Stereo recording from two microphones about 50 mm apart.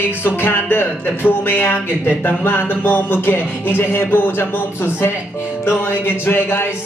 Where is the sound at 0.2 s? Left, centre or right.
Left.